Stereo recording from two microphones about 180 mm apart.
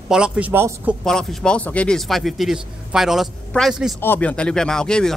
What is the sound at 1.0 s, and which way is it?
A man's voice, centre (ahead or behind).